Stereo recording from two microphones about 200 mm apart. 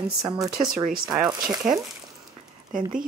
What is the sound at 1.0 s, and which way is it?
Speech, centre (ahead or behind).